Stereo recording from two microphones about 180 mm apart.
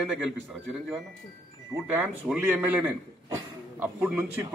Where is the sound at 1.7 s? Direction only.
10° right (ahead or behind).